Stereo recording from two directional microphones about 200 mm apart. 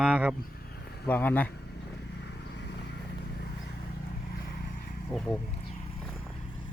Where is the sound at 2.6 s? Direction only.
55° left (ahead or behind).